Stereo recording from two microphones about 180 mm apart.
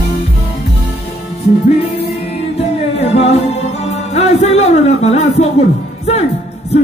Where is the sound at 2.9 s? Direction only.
35° left (ahead or behind).